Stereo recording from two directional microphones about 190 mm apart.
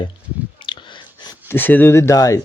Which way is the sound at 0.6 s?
25° left (ahead or behind).